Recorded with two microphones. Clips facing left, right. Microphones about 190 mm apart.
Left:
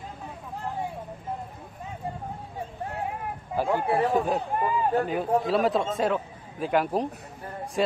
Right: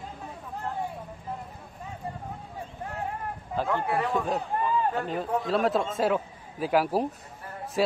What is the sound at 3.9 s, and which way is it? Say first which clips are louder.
Speech: left 4 dB; 30° left (ahead or behind).